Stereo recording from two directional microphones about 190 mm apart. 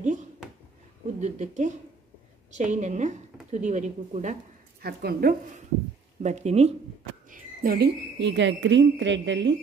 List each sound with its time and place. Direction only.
0.0 s a sound: 40° right (ahead or behind)
1.2 s a woman's voice: 40° right (ahead or behind)
4.8 s a woman's voice: 55° right (ahead or behind)
6.2 s a woman's voice: 35° right (ahead or behind)
7.2 s a woman's voice: 45° right (ahead or behind); by 9.6 s 70° right (ahead or behind)